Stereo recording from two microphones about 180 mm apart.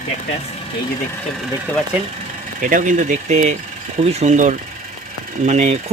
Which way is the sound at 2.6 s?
50° right (ahead or behind).